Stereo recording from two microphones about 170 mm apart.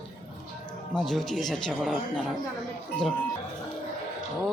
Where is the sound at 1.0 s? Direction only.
Centre (ahead or behind).